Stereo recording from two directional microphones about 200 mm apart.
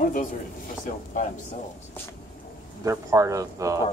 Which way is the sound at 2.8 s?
15° right (ahead or behind).